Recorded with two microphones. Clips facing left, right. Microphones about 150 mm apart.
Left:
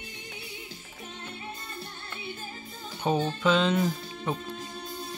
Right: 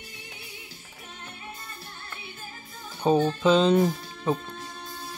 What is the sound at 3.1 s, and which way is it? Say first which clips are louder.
Speech: right 4 dB; 40° right (ahead or behind).